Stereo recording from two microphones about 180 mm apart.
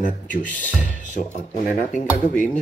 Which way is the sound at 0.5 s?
10° left (ahead or behind).